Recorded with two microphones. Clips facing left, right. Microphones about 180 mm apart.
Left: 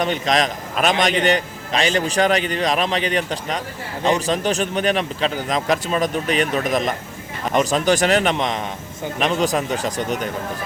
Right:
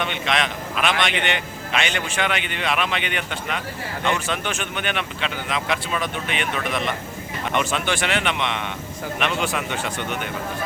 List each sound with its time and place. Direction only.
0.0 s a man's voice: 40° left (ahead or behind)